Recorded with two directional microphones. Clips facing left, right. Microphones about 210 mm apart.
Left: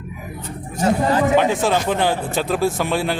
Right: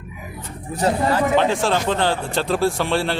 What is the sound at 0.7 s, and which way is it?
Speech, 35° right (ahead or behind).